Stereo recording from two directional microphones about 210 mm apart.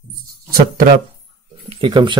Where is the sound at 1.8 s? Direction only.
20° right (ahead or behind).